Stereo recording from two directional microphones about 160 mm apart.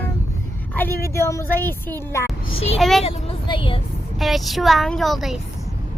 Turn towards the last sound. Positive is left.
turn(degrees=0)  # may be behind; listen again after turning